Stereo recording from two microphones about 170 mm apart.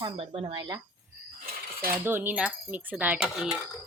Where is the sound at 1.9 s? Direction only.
15° right (ahead or behind).